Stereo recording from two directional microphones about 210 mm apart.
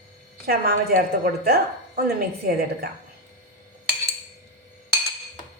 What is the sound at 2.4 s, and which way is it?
Speech, 45° right (ahead or behind).